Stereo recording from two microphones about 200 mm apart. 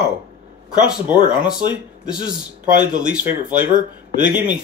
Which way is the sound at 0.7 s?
5° right (ahead or behind).